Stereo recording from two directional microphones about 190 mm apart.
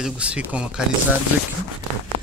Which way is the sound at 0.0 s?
5° right (ahead or behind).